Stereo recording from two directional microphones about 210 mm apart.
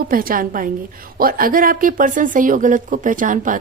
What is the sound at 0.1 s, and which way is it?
Speech, 45° right (ahead or behind).